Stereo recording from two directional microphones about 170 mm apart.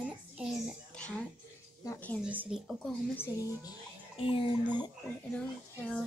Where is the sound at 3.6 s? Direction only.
30° left (ahead or behind).